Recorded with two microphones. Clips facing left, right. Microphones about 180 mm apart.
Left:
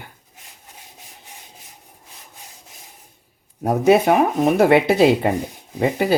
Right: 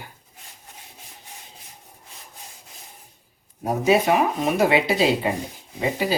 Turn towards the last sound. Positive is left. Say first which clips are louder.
# left 5 dB
turn(degrees=55)  # may be behind; listen again after turning